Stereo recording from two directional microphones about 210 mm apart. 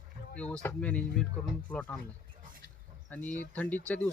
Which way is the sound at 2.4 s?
40° right (ahead or behind).